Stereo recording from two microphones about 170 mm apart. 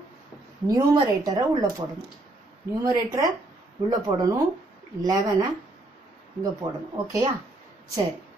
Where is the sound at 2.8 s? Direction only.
20° right (ahead or behind).